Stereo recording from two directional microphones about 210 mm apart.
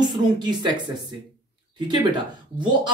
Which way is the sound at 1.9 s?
20° right (ahead or behind).